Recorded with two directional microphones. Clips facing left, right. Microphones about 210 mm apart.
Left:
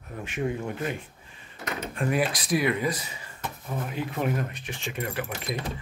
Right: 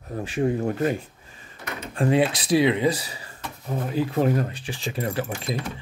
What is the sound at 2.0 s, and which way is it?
Speech, 25° right (ahead or behind).